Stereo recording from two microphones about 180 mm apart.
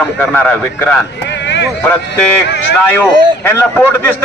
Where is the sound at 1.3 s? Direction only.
75° left (ahead or behind).